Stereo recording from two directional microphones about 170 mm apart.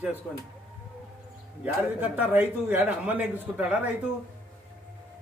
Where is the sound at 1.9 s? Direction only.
10° right (ahead or behind).